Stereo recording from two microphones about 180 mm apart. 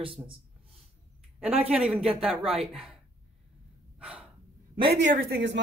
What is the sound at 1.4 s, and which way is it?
Speech, 10° right (ahead or behind).